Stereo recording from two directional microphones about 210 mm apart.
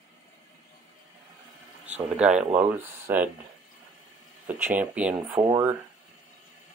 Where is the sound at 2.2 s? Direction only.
5° right (ahead or behind).